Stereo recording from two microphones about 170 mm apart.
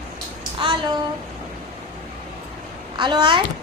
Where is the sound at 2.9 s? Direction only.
25° right (ahead or behind).